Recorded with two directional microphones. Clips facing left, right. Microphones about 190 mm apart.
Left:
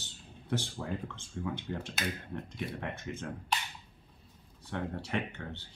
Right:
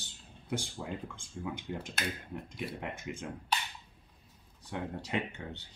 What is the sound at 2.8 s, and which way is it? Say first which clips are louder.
Speech: left 1 dB; 15° right (ahead or behind).